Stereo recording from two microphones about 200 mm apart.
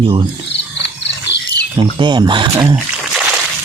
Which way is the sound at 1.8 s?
20° right (ahead or behind).